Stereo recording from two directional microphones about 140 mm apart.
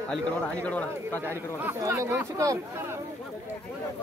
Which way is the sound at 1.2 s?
15° right (ahead or behind).